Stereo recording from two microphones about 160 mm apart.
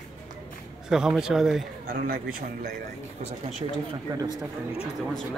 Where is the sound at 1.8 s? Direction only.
70° right (ahead or behind).